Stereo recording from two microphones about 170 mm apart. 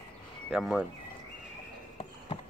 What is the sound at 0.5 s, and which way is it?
Speech, 5° right (ahead or behind).